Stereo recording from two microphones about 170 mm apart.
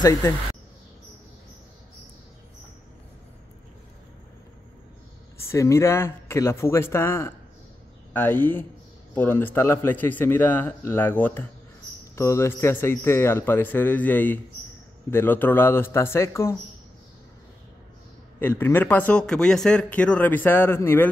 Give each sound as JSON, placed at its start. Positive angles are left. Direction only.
{"t": 0.0, "sound": "speech", "side_deg": 20}
{"t": 5.5, "sound": "speech", "side_deg": 15}
{"t": 18.4, "sound": "speech", "side_deg": 10}